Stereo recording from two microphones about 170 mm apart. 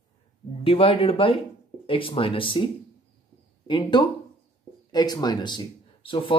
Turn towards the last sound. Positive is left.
turn(degrees=30)  # may be behind; listen again after turning